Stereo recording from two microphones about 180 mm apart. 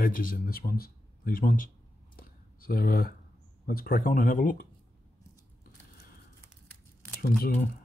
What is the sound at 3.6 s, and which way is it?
Speech, 55° left (ahead or behind).